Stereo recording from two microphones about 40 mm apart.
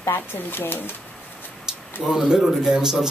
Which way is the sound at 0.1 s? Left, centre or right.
Left.